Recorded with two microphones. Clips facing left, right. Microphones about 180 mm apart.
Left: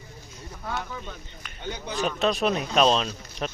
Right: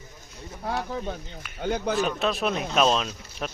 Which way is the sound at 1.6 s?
60° right (ahead or behind).